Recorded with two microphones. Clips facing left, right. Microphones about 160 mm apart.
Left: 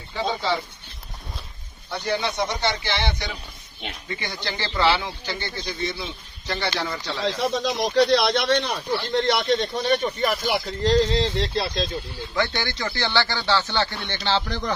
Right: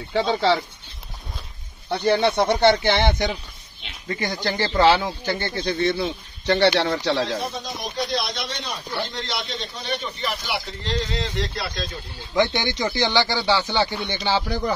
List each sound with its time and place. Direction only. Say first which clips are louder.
0.1 s speech: right 5 dB; 75° right (ahead or behind)
2.1 s speech: right 5 dB; 55° right (ahead or behind)
3.8 s speech: left 8 dB; 50° left (ahead or behind)
4.2 s a man's voice: right 8 dB; 45° right (ahead or behind); by 5.9 s 60° right (ahead or behind)
6.0 s speech: right 9 dB; 70° right (ahead or behind)
8.1 s speech: left 8 dB; 70° left (ahead or behind); by 11.9 s 25° left (ahead or behind)
12.4 s speech: right 5 dB; 20° right (ahead or behind)